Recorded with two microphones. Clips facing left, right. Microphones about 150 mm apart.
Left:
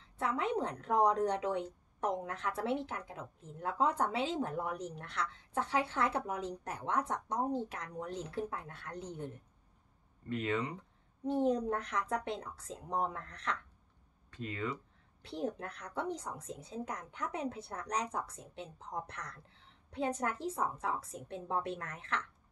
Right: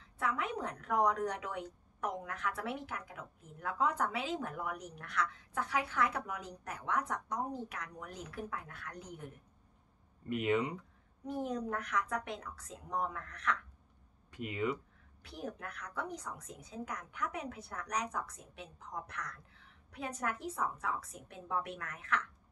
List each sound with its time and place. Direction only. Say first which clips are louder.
0.0 s a woman's voice: left 2 dB; 30° left (ahead or behind)
10.3 s speech: right 3 dB; 15° right (ahead or behind)
11.2 s a woman's voice: left 6 dB; 25° left (ahead or behind)
14.3 s speech: right 3 dB; 15° right (ahead or behind)
15.2 s a woman's voice: left 5 dB; 30° left (ahead or behind)